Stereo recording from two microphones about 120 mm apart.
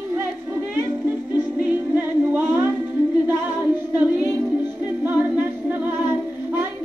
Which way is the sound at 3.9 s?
15° right (ahead or behind).